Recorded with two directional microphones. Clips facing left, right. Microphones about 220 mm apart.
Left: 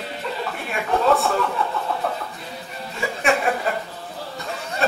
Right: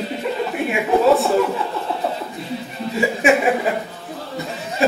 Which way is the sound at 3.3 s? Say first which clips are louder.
Right 5 dB; 15° right (ahead or behind).